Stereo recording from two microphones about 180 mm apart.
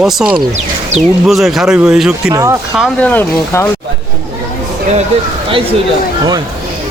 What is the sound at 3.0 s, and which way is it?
Speech, 10° left (ahead or behind).